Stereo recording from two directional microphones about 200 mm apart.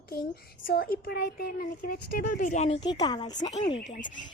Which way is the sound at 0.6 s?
50° left (ahead or behind).